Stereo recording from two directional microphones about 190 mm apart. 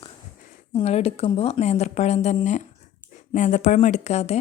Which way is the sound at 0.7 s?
30° left (ahead or behind).